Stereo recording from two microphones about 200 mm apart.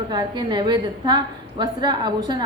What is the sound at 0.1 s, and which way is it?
A woman's voice, 20° right (ahead or behind).